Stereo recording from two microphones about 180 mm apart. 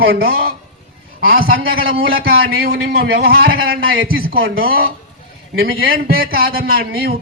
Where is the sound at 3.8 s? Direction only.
90° right.